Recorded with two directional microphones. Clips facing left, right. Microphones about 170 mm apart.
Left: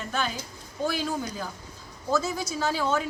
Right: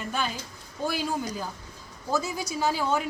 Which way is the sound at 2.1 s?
15° right (ahead or behind).